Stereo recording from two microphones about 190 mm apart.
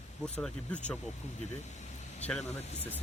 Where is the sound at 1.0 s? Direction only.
35° left (ahead or behind).